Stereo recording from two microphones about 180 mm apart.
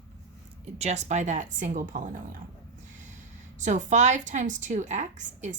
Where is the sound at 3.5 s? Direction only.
40° right (ahead or behind).